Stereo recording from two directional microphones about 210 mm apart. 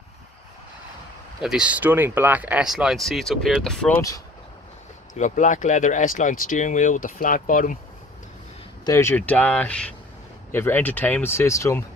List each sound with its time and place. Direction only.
1.4 s speech: 5° right (ahead or behind)
5.1 s speech: 35° left (ahead or behind)
8.8 s speech: 10° left (ahead or behind)